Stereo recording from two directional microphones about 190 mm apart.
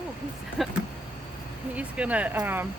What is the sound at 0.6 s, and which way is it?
Speech, centre (ahead or behind).